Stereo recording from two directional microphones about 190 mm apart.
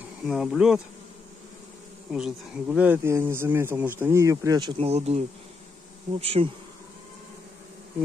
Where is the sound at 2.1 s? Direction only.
5° right (ahead or behind); by 5.2 s 35° right (ahead or behind).